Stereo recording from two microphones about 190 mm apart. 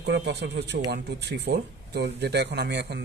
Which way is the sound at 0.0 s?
65° right (ahead or behind).